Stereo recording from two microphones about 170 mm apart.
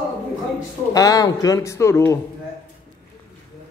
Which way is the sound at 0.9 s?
20° left (ahead or behind).